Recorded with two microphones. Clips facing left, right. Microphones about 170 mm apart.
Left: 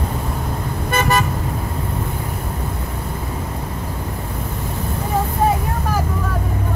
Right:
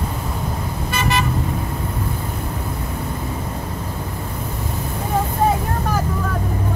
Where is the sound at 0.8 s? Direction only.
50° left (ahead or behind).